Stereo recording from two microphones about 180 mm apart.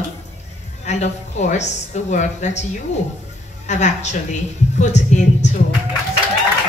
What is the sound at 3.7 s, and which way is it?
Speech, 40° left (ahead or behind).